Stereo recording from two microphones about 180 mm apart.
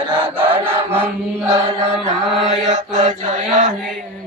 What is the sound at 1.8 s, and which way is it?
Mantra, 35° right (ahead or behind).